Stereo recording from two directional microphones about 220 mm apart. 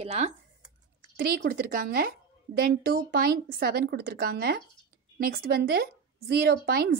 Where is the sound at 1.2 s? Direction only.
40° right (ahead or behind).